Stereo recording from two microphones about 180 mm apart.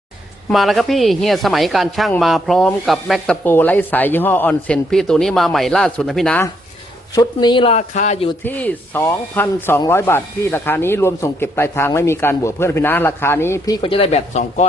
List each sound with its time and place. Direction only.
0.5 s speech: centre (ahead or behind)
7.2 s speech: 25° left (ahead or behind); by 8.3 s 40° left (ahead or behind)
8.4 s speech: 10° left (ahead or behind)
13.8 s speech: 30° left (ahead or behind)